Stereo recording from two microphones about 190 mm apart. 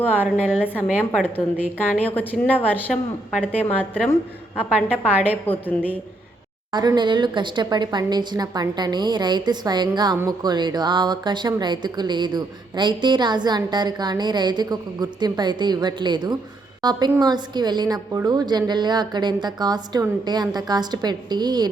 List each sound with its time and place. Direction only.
0.1 s a woman's voice: 10° right (ahead or behind)
0.7 s a woman's voice: 10° left (ahead or behind)
6.7 s speech: 20° right (ahead or behind)